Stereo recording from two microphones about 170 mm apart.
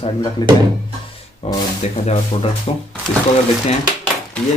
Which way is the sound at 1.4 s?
40° left (ahead or behind).